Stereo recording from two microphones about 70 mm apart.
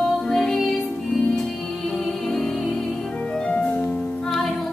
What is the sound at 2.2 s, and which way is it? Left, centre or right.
Music, centre.